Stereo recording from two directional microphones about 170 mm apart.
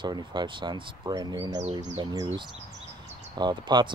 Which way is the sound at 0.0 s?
25° right (ahead or behind).